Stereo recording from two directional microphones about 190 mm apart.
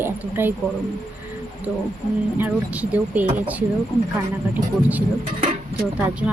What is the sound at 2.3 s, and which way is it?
Speech, 10° right (ahead or behind).